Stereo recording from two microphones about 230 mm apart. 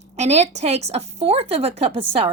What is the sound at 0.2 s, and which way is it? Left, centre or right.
A woman's voice, right.